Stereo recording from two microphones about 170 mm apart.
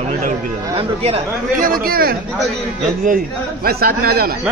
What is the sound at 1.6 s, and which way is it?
Speech, 55° right (ahead or behind).